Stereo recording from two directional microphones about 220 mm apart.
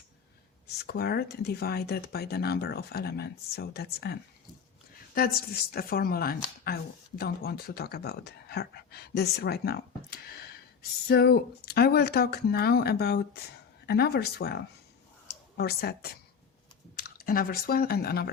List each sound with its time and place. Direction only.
0.9 s speech: 45° left (ahead or behind)